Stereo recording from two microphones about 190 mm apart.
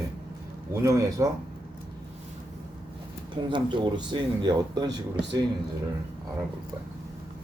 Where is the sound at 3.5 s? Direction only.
25° right (ahead or behind).